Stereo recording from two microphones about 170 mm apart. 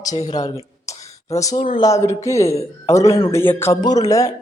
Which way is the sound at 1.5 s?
50° left (ahead or behind).